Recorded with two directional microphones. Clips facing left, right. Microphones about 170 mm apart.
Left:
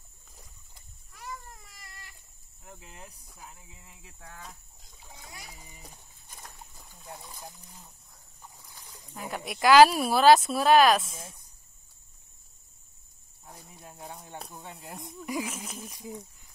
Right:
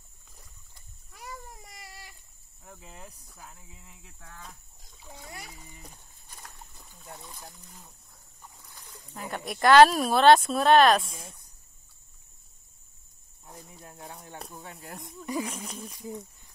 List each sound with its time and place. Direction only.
1.1 s a sound: 5° right (ahead or behind)
1.7 s cat: 70° right (ahead or behind)
2.6 s cricket: 5° left (ahead or behind)
3.3 s speech: 10° left (ahead or behind)
5.5 s speech: 15° left (ahead or behind)
6.8 s speech: centre (ahead or behind)
9.1 s speech: 5° left (ahead or behind)
13.7 s speech: 20° left (ahead or behind)
14.4 s speech: centre (ahead or behind)